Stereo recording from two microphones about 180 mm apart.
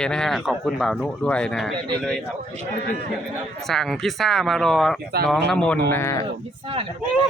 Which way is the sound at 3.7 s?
Centre (ahead or behind).